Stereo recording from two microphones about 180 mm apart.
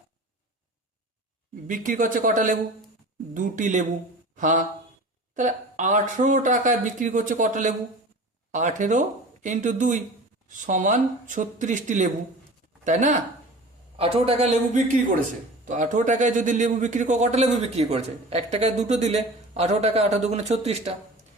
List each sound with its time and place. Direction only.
1.6 s a man's voice: 45° right (ahead or behind)
13.9 s a man's voice: 30° right (ahead or behind)